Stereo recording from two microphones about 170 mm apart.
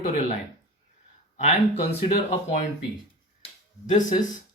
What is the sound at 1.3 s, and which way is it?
Speech, 40° left (ahead or behind).